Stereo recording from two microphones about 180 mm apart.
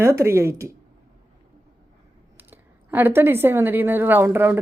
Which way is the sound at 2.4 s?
10° right (ahead or behind).